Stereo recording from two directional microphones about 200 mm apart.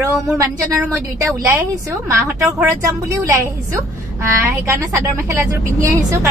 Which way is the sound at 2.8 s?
15° right (ahead or behind).